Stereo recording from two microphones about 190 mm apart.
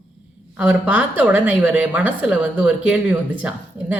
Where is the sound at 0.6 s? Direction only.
5° right (ahead or behind).